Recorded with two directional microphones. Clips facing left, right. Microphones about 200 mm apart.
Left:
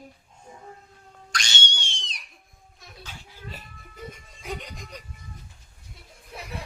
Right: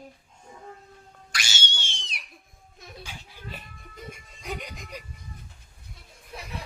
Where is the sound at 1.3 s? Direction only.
5° right (ahead or behind).